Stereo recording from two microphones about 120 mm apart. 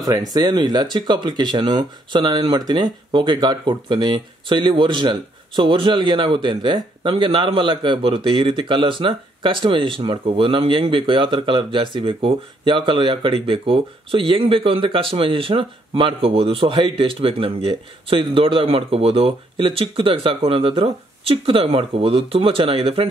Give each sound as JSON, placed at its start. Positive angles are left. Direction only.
{"t": 0.0, "sound": "speech", "side_deg": -35}